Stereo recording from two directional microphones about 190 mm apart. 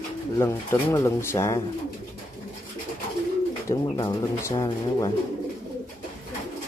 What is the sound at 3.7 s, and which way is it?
Speech, 20° left (ahead or behind).